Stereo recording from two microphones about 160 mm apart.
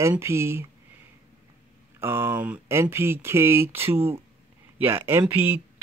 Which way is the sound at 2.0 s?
15° right (ahead or behind).